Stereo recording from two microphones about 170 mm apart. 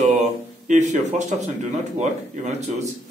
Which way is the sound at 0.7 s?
45° right (ahead or behind).